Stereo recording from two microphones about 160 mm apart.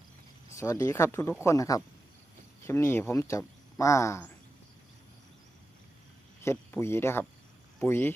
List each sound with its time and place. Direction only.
0.5 s speech: 20° left (ahead or behind)
6.4 s speech: 15° left (ahead or behind)